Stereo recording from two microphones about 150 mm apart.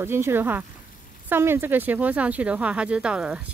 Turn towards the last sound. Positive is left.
turn(degrees=-5)  # may be behind; listen again after turning